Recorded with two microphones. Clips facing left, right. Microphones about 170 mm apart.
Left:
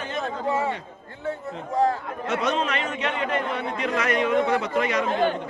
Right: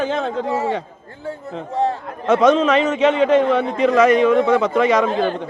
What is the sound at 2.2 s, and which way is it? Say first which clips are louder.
A man's voice: right 11 dB; 90° right.